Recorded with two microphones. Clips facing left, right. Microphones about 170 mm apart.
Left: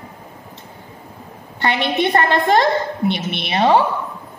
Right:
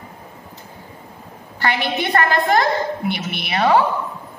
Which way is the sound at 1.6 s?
20° left (ahead or behind).